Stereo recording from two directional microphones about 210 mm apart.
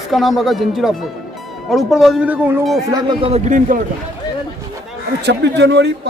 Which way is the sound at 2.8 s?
20° right (ahead or behind).